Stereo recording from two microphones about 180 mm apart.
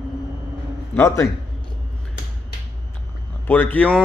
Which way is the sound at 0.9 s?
15° left (ahead or behind).